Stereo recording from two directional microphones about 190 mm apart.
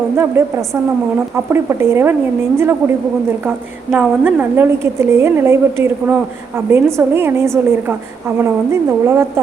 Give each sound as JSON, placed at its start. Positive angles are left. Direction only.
{"t": 0.4, "sound": "a woman's voice", "side_deg": -15}
{"t": 1.5, "sound": "a woman's voice", "side_deg": -15}
{"t": 3.9, "sound": "a woman's voice", "side_deg": -10}